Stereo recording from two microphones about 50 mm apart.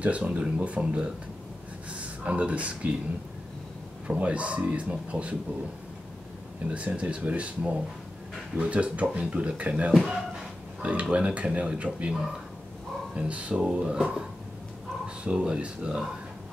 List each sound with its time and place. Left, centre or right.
0.0 s speech: right
4.1 s speech: right
6.7 s speech: right
13.1 s speech: right
15.2 s speech: centre